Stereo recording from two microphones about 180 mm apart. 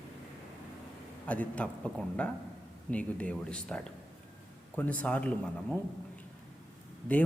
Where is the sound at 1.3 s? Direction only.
5° left (ahead or behind).